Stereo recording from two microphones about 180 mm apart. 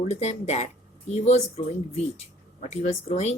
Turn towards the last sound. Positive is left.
turn(degrees=40)  # may be behind; listen again after turning